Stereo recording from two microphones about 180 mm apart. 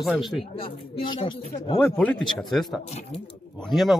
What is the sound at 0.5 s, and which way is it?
Speech, 30° left (ahead or behind).